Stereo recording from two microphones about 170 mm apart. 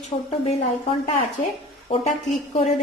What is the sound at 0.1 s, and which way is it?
A woman's voice, 35° left (ahead or behind).